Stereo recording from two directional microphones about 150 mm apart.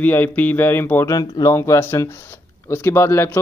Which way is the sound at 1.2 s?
25° left (ahead or behind).